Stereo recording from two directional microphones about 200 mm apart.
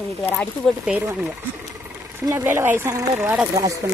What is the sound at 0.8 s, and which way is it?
Speech, 5° right (ahead or behind).